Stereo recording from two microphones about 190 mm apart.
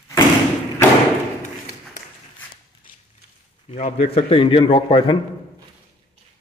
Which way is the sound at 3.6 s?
30° left (ahead or behind).